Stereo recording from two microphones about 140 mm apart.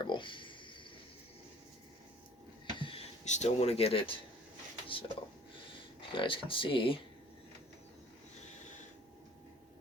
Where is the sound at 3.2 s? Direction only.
55° left (ahead or behind).